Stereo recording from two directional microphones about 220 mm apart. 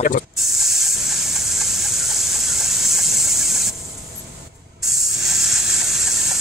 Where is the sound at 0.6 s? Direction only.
Centre (ahead or behind).